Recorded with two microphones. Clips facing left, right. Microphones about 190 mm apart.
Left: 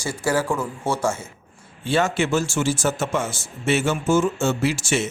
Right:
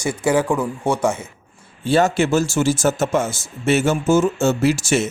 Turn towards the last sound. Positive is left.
turn(degrees=-40)  # may be behind; listen again after turning